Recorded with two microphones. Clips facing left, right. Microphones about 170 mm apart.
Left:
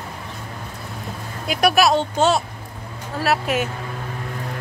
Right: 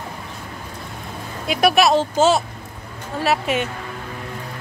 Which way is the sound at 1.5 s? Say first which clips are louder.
Right 1 dB; centre (ahead or behind).